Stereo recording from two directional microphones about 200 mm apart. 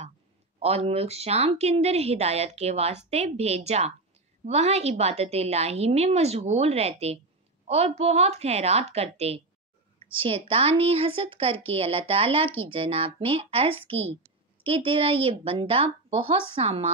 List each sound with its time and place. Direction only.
0.6 s a woman's voice: 30° right (ahead or behind)